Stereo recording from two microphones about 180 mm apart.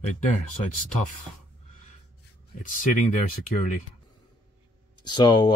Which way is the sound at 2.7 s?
45° left (ahead or behind).